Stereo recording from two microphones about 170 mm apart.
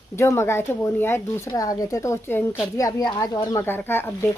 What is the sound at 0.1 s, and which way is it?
A woman's voice, 15° left (ahead or behind).